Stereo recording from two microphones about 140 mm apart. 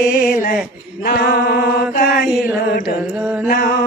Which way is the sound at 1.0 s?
80° left.